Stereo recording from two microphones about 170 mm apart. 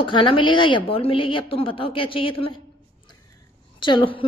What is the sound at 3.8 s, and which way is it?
Speech, 30° left (ahead or behind).